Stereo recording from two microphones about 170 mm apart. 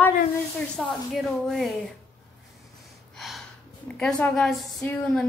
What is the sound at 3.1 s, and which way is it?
Gasp, centre (ahead or behind).